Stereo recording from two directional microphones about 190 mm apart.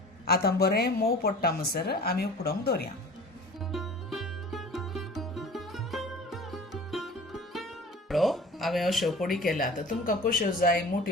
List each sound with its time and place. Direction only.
0.3 s a woman's voice: 55° left (ahead or behind)
3.7 s music: centre (ahead or behind)
9.6 s speech: 45° left (ahead or behind)